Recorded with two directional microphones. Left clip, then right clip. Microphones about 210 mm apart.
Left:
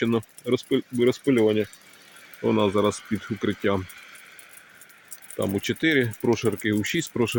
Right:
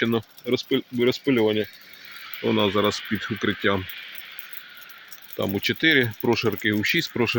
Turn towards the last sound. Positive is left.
turn(degrees=10)  # may be behind; listen again after turning